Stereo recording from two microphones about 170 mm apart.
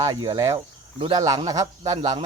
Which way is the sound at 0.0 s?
25° right (ahead or behind).